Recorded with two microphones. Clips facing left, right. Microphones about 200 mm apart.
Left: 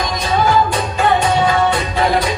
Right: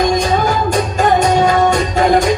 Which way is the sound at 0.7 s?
45° right (ahead or behind).